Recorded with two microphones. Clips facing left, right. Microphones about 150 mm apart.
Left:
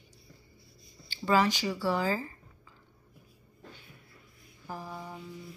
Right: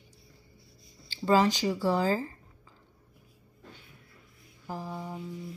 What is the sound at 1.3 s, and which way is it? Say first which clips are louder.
Speech: right 2 dB; 30° right (ahead or behind).